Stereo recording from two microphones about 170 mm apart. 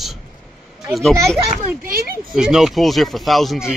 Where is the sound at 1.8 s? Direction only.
60° right (ahead or behind).